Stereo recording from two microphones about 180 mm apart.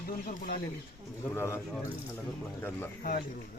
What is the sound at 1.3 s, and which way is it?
Speech, 15° left (ahead or behind).